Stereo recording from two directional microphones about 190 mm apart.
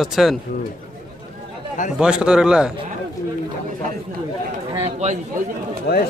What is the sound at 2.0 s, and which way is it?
Speech, 5° right (ahead or behind).